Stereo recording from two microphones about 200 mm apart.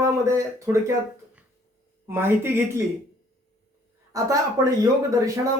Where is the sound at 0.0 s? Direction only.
15° right (ahead or behind).